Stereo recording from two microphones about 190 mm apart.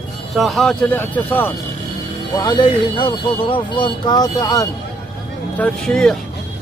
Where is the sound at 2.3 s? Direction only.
20° left (ahead or behind).